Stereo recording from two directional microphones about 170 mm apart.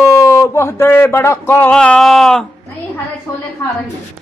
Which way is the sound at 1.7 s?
5° left (ahead or behind).